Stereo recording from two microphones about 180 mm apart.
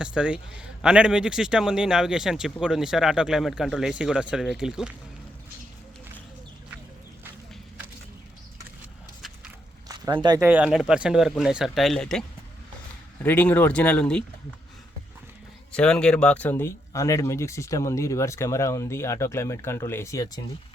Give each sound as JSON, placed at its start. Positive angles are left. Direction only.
{"t": 0.0, "sound": "speech", "side_deg": -5}
{"t": 9.9, "sound": "speech", "side_deg": -25}
{"t": 10.4, "sound": "speech", "side_deg": -5}
{"t": 13.2, "sound": "speech", "side_deg": 10}
{"t": 15.7, "sound": "speech", "side_deg": 5}